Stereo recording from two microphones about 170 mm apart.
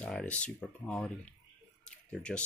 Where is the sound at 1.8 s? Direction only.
5° left (ahead or behind).